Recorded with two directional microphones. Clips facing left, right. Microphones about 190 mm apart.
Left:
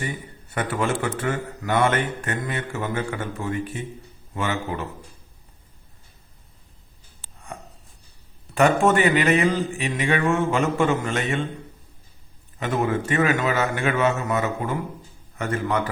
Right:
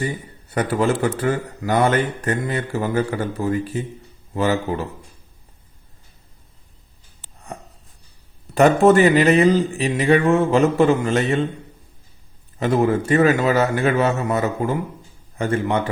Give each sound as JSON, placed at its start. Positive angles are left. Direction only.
{"t": 0.5, "sound": "a man's voice", "side_deg": -35}
{"t": 8.5, "sound": "a man's voice", "side_deg": -35}
{"t": 12.5, "sound": "a man's voice", "side_deg": -35}